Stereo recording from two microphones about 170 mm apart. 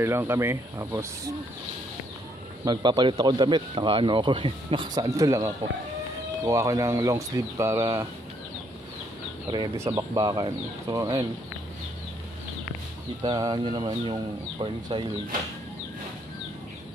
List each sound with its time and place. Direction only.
0.0 s speech: 15° right (ahead or behind)
2.6 s speech: 25° right (ahead or behind)
9.5 s speech: 25° right (ahead or behind)
13.2 s speech: 25° right (ahead or behind)